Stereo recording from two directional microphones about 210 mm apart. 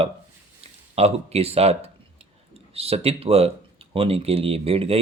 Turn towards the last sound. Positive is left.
turn(degrees=-25)  # may be behind; listen again after turning